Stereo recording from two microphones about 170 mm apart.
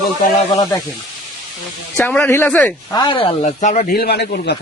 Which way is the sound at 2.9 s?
25° left (ahead or behind).